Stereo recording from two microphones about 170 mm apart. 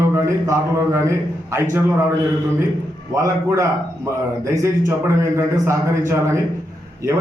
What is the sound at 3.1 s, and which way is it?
A man's voice, 20° right (ahead or behind).